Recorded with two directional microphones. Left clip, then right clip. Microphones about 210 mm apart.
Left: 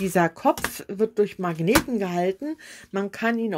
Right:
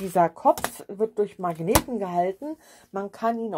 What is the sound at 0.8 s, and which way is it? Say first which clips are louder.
Speech: left 3 dB; 40° left (ahead or behind).